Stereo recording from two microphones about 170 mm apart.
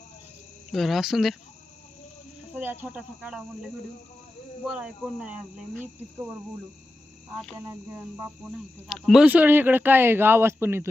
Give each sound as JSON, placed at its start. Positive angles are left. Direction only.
{"t": 0.7, "sound": "speech", "side_deg": 0}
{"t": 2.5, "sound": "speech", "side_deg": -10}
{"t": 7.5, "sound": "speech", "side_deg": -15}
{"t": 8.9, "sound": "speech", "side_deg": 0}
{"t": 9.2, "sound": "speech", "side_deg": -10}